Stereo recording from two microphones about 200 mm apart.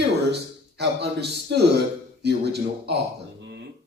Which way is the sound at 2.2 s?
55° right (ahead or behind).